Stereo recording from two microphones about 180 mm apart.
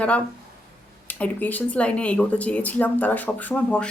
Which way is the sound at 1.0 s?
10° left (ahead or behind).